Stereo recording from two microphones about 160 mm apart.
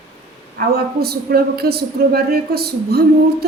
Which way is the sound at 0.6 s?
75° right (ahead or behind).